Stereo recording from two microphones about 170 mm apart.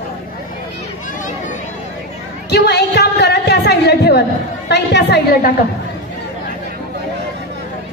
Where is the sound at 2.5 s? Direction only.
75° left (ahead or behind).